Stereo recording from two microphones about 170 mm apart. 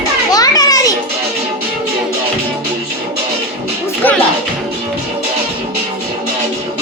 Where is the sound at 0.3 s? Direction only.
20° left (ahead or behind).